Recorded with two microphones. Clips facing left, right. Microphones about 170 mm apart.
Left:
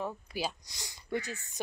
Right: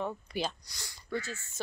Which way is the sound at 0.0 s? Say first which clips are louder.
Right 1 dB; 5° left (ahead or behind).